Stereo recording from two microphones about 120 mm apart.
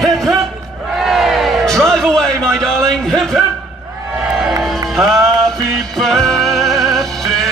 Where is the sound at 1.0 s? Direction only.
Centre (ahead or behind).